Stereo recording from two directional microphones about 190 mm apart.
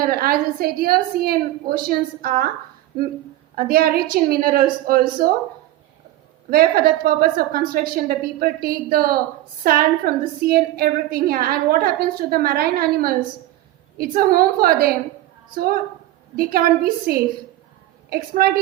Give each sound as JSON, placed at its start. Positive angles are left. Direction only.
{"t": 0.0, "sound": "a woman's voice", "side_deg": -50}
{"t": 3.5, "sound": "a woman's voice", "side_deg": -50}
{"t": 6.5, "sound": "a woman's voice", "side_deg": -50}
{"t": 16.3, "sound": "a woman's voice", "side_deg": -50}